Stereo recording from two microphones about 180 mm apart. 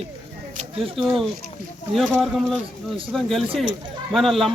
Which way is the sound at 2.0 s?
Centre (ahead or behind).